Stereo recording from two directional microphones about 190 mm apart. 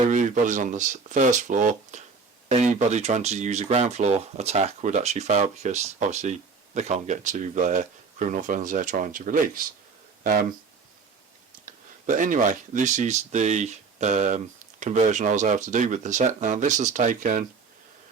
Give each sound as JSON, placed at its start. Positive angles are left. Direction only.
{"t": 0.1, "sound": "speech", "side_deg": -40}
{"t": 11.6, "sound": "speech", "side_deg": -40}